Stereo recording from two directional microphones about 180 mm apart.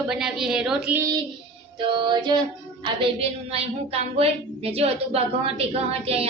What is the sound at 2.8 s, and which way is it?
A woman's voice, 30° right (ahead or behind).